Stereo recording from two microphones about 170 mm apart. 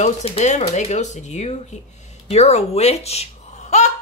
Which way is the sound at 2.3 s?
40° left (ahead or behind).